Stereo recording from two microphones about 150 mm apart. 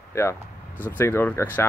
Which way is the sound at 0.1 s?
15° left (ahead or behind).